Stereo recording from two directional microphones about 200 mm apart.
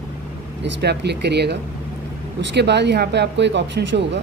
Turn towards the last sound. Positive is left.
turn(degrees=-60)  # may be behind; listen again after turning